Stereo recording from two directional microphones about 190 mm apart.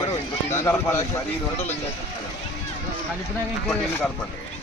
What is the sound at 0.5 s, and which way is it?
Speech, 15° left (ahead or behind).